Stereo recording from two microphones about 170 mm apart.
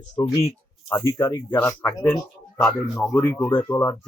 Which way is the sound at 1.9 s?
20° left (ahead or behind).